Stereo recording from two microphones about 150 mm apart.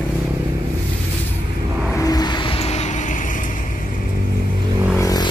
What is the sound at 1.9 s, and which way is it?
Vehicle, 25° left (ahead or behind).